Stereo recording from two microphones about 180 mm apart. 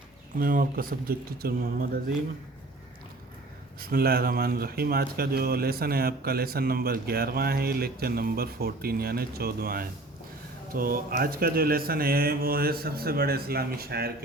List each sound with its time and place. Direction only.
0.3 s speech: 50° right (ahead or behind)
3.8 s speech: 55° right (ahead or behind)